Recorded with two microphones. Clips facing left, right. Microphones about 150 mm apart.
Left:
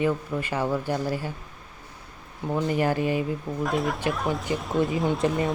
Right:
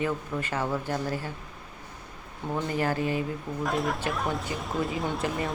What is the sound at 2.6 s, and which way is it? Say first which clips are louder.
Speech: left 4 dB; 15° left (ahead or behind).